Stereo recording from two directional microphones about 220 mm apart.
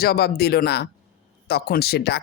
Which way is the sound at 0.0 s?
45° left (ahead or behind).